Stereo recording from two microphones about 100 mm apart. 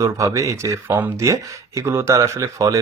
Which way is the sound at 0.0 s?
35° right (ahead or behind).